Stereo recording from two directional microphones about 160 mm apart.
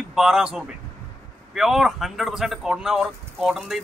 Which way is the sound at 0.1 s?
5° right (ahead or behind).